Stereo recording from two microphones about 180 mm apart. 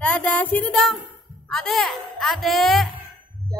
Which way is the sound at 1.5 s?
Centre (ahead or behind).